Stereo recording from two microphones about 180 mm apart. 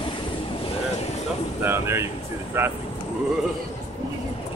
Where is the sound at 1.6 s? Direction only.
15° right (ahead or behind).